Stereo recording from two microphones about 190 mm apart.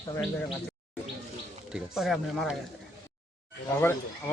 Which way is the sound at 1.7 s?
Centre (ahead or behind).